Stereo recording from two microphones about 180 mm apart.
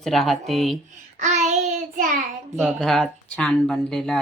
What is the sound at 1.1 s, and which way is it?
Child singing, 40° right (ahead or behind).